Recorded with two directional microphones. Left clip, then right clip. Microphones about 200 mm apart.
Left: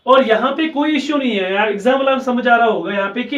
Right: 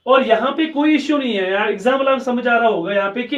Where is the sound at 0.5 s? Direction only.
10° right (ahead or behind).